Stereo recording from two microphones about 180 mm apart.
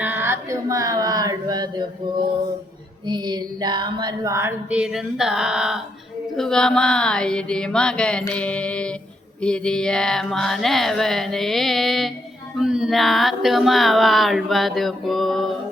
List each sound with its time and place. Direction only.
0.0 s speech: 10° right (ahead or behind)
3.1 s a sound: 25° right (ahead or behind); by 5.8 s 5° right (ahead or behind)
6.3 s speech: centre (ahead or behind)
8.3 s mantra: 5° left (ahead or behind)
9.4 s speech: 5° left (ahead or behind)